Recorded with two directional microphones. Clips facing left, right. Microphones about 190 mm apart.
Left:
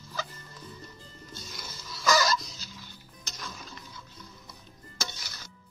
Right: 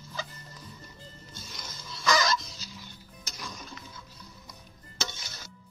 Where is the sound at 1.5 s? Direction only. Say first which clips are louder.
Left 1 dB; 5° left (ahead or behind).